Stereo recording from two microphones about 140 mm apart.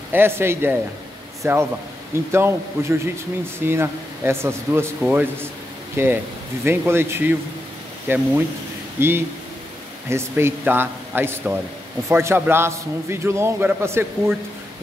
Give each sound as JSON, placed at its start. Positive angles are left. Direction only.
{"t": 0.1, "sound": "a man's voice", "side_deg": -15}